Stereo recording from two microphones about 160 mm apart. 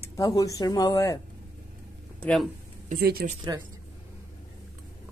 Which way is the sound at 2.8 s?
70° right (ahead or behind).